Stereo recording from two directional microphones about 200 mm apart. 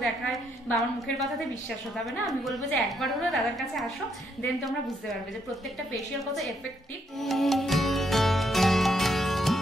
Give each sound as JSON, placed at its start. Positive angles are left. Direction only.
{"t": 0.0, "sound": "a woman's voice", "side_deg": 0}
{"t": 7.2, "sound": "music", "side_deg": 0}